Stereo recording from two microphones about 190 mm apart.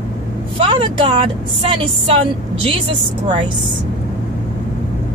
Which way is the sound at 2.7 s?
30° right (ahead or behind).